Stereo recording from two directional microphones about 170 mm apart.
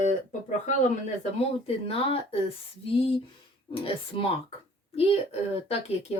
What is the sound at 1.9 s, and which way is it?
Speech, 35° left (ahead or behind).